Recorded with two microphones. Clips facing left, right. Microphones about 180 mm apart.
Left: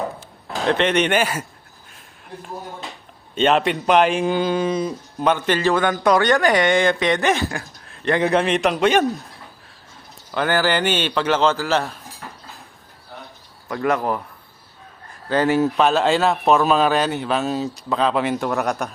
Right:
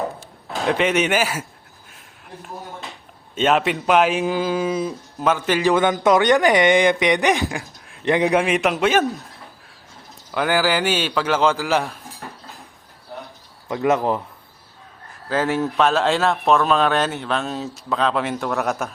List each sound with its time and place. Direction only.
0.6 s speech: 10° right (ahead or behind)
3.3 s speech: 5° right (ahead or behind)
10.3 s speech: 10° right (ahead or behind)
13.7 s speech: 20° right (ahead or behind)
15.3 s a man's voice: centre (ahead or behind)